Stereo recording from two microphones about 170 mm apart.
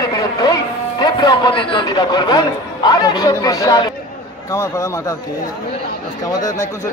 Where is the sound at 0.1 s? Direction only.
20° left (ahead or behind).